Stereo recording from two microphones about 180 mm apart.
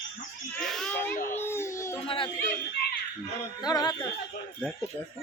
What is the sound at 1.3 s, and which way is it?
Crying, 15° left (ahead or behind).